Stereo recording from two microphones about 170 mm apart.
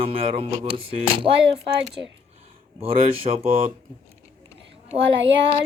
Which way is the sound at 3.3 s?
40° right (ahead or behind).